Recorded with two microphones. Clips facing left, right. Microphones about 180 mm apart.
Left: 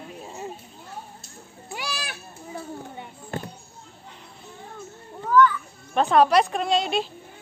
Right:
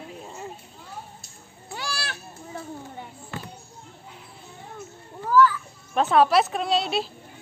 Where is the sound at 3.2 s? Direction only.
40° left (ahead or behind).